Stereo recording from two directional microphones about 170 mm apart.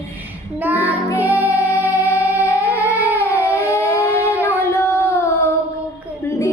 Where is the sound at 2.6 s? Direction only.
15° left (ahead or behind).